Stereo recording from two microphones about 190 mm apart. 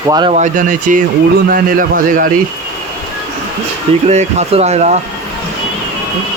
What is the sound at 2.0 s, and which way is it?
Speech, 45° right (ahead or behind).